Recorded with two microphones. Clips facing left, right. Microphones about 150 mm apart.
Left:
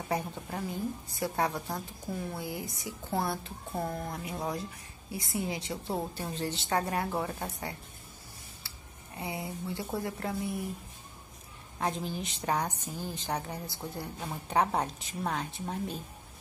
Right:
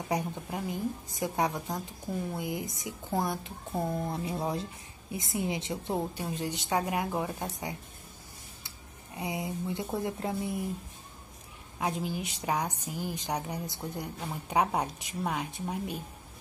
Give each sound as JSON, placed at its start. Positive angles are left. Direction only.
{"t": 0.1, "sound": "a woman's voice", "side_deg": -15}
{"t": 4.1, "sound": "a woman's voice", "side_deg": -25}
{"t": 8.6, "sound": "a sound", "side_deg": -20}
{"t": 10.0, "sound": "a woman's voice", "side_deg": -20}
{"t": 11.8, "sound": "a woman's voice", "side_deg": -10}